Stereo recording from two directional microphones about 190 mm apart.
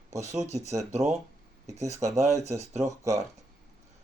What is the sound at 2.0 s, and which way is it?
Speech, 15° right (ahead or behind).